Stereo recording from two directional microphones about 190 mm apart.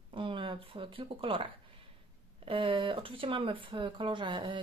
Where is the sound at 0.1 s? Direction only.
25° right (ahead or behind).